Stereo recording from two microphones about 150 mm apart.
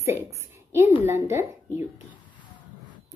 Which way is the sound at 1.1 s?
15° right (ahead or behind).